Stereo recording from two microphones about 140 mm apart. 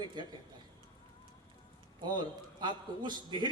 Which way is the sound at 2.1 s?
35° right (ahead or behind).